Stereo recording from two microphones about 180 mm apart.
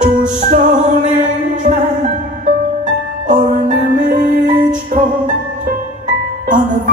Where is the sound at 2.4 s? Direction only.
45° right (ahead or behind).